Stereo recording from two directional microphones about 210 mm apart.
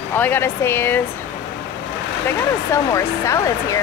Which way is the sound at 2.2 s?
15° left (ahead or behind).